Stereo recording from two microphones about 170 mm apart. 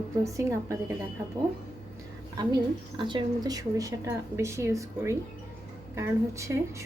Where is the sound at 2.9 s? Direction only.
25° right (ahead or behind).